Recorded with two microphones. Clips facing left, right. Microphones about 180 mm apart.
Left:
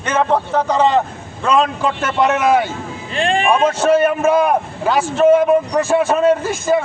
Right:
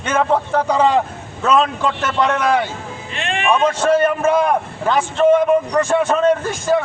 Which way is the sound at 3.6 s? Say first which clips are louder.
Left 1 dB; 10° left (ahead or behind).